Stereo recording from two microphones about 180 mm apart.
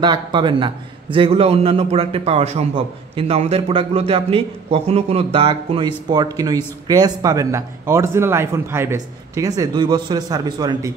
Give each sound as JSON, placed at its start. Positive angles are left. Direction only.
{"t": 0.0, "sound": "a man's voice", "side_deg": -25}